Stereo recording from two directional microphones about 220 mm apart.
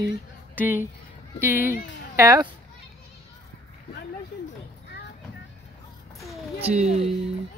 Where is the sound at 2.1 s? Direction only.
15° right (ahead or behind).